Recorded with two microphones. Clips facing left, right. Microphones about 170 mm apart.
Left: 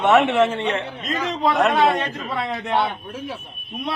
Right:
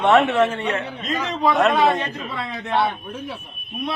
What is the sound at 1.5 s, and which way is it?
Speech, centre (ahead or behind).